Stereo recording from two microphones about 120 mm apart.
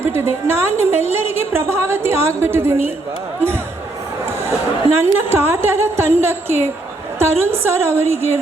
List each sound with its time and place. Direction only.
0.0 s a woman's voice: 20° right (ahead or behind)
4.9 s a woman's voice: 20° right (ahead or behind)